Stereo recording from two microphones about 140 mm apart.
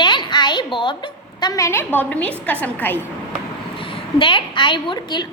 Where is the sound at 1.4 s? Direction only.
25° left (ahead or behind).